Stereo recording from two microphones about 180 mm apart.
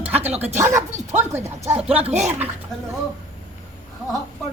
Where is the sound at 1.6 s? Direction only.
10° right (ahead or behind).